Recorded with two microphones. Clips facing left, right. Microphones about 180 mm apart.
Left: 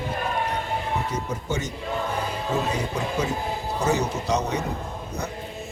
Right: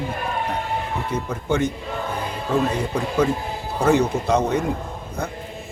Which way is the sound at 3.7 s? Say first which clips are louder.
Right 7 dB; 55° right (ahead or behind).